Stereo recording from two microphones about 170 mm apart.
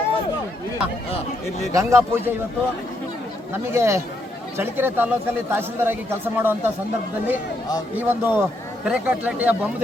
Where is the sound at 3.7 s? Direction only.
15° right (ahead or behind).